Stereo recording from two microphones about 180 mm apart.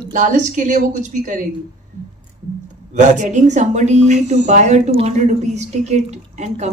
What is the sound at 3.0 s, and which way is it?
A woman's voice, 40° right (ahead or behind).